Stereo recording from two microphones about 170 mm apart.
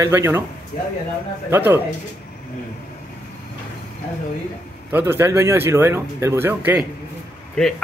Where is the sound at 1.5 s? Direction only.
10° right (ahead or behind).